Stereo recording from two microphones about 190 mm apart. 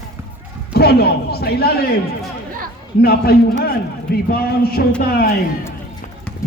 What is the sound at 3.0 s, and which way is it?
A man's voice, 55° left (ahead or behind).